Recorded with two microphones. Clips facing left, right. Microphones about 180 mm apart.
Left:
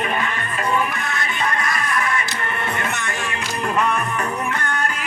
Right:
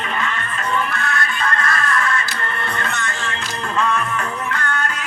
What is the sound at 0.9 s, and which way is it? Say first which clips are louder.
Music: right 2 dB; 15° left (ahead or behind).